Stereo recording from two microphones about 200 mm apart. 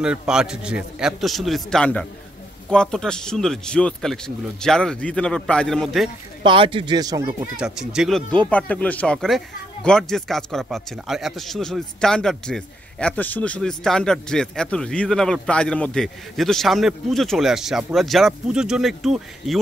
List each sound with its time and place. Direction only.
0.0 s a man's voice: 5° right (ahead or behind)
6.4 s speech: 25° right (ahead or behind)
7.5 s a man's voice: 5° right (ahead or behind)